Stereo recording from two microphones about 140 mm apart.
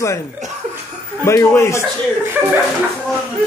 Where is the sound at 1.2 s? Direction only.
20° left (ahead or behind).